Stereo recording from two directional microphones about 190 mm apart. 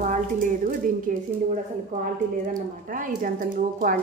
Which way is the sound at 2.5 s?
45° right (ahead or behind).